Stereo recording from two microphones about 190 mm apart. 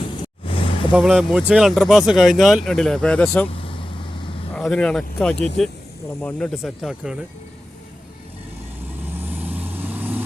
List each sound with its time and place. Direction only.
0.0 s vehicle: 30° left (ahead or behind)
0.9 s speech: centre (ahead or behind)
3.5 s vehicle: 30° left (ahead or behind)
4.5 s speech: 5° left (ahead or behind)
9.1 s vehicle: 10° right (ahead or behind)